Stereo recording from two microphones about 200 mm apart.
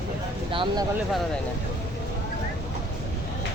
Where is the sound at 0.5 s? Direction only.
25° right (ahead or behind).